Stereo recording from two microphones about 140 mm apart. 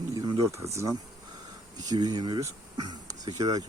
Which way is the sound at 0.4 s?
20° right (ahead or behind).